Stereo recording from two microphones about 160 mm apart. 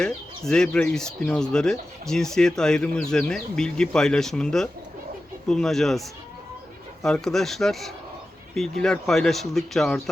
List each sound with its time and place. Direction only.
0.4 s speech: 5° left (ahead or behind)